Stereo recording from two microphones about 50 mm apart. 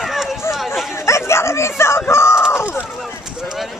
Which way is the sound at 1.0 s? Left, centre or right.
Left.